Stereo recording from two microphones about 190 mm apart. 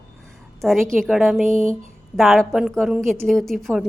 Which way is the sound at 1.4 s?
40° right (ahead or behind).